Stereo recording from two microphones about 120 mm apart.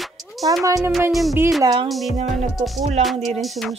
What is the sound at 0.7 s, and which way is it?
Speech, 25° right (ahead or behind).